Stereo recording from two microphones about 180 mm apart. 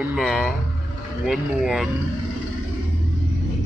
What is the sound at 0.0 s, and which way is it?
Speech, 5° right (ahead or behind).